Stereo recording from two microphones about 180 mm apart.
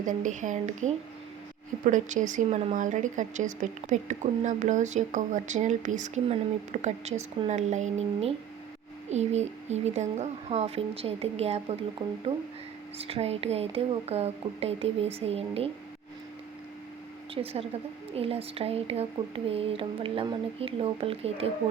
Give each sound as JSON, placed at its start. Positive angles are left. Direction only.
{"t": 0.0, "sound": "speech", "side_deg": -45}
{"t": 17.3, "sound": "speech", "side_deg": -30}